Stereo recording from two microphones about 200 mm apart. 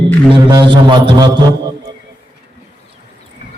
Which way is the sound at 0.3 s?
25° right (ahead or behind).